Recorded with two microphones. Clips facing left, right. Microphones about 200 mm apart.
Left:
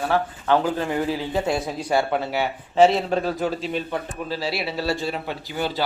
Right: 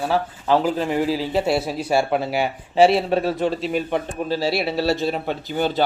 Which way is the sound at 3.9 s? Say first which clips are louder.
Right 5 dB; 30° right (ahead or behind).